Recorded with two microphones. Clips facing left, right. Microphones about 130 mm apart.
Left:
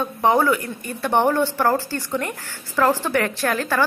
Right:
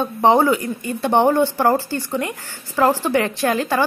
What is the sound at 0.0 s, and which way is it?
Speech, 25° right (ahead or behind).